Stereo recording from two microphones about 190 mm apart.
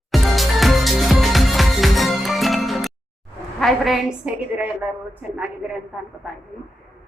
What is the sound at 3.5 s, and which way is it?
A woman's voice, centre (ahead or behind).